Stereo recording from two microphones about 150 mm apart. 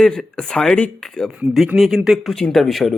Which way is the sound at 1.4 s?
10° right (ahead or behind).